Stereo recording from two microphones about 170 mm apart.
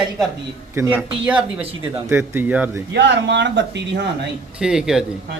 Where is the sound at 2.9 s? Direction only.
90° right.